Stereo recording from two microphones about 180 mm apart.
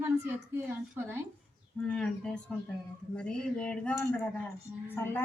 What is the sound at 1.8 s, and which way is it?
Speech, 5° left (ahead or behind).